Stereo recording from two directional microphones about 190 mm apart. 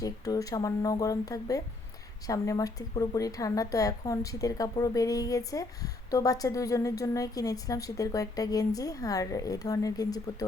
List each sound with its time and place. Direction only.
0.0 s a woman's voice: 20° left (ahead or behind)